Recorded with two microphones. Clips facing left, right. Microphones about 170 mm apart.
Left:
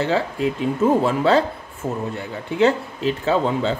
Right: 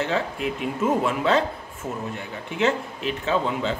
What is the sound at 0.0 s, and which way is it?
Speech, 30° left (ahead or behind).